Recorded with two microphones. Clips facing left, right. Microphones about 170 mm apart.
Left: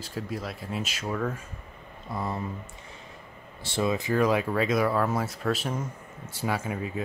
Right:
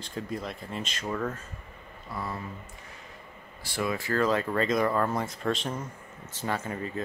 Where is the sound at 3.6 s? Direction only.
25° left (ahead or behind).